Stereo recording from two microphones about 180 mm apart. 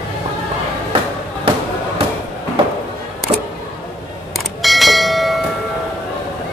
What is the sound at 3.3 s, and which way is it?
Music, 30° right (ahead or behind).